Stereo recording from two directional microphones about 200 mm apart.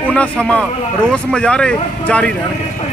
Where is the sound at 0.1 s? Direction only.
5° left (ahead or behind).